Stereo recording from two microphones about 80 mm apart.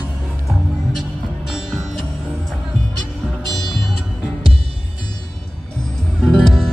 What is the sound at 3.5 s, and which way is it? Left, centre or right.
Music, centre.